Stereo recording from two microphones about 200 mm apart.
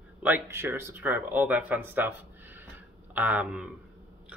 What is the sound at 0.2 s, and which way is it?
Speech, 15° right (ahead or behind).